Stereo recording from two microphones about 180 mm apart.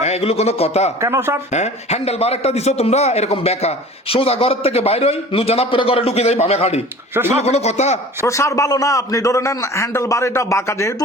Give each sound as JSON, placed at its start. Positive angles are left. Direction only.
{"t": 0.0, "sound": "a man's voice", "side_deg": 35}
{"t": 1.0, "sound": "speech", "side_deg": -15}
{"t": 1.5, "sound": "a man's voice", "side_deg": 40}
{"t": 8.3, "sound": "a man's voice", "side_deg": 15}